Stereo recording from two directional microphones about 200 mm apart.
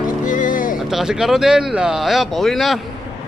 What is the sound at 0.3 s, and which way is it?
Music, 40° left (ahead or behind).